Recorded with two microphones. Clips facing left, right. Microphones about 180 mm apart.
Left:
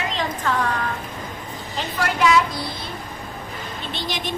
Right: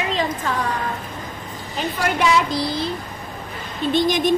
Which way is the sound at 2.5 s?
30° right (ahead or behind).